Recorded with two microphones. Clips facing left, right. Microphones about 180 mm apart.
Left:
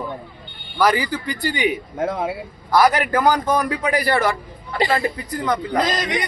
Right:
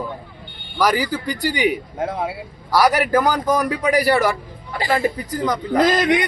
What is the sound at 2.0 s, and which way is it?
Speech, 50° left (ahead or behind).